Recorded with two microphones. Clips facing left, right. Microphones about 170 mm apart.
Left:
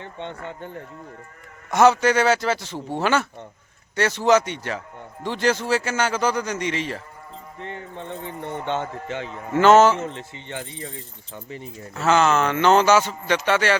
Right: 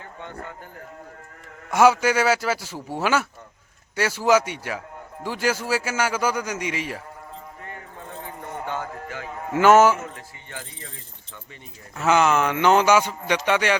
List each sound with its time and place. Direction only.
0.0 s a sound: 25° left (ahead or behind)
0.4 s speech: 25° left (ahead or behind)
1.7 s speech: 10° right (ahead or behind)
7.6 s speech: 25° left (ahead or behind)
9.5 s speech: 10° right (ahead or behind)
10.0 s speech: 25° left (ahead or behind)
11.9 s speech: 15° right (ahead or behind)